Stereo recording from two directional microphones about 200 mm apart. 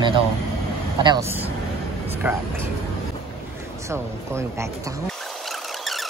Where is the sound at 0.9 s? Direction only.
20° right (ahead or behind).